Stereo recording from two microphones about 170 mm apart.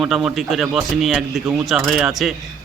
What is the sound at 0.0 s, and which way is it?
A man's voice, centre (ahead or behind).